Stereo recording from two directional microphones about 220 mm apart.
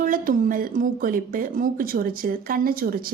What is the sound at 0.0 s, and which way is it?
Speech, 40° right (ahead or behind).